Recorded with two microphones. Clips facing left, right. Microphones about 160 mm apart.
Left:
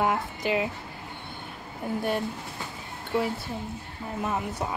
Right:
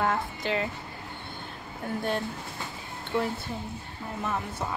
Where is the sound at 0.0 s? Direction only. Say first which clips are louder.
Left 2 dB; 15° left (ahead or behind).